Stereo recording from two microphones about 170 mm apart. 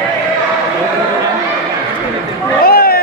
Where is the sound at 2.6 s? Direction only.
60° left (ahead or behind).